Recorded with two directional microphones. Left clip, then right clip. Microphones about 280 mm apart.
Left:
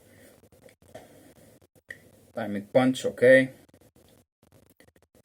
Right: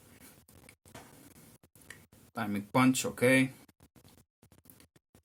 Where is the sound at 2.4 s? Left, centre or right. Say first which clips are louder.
Left 6 dB; centre.